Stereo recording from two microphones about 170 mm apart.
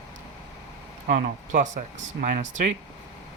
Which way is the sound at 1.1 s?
50° right (ahead or behind).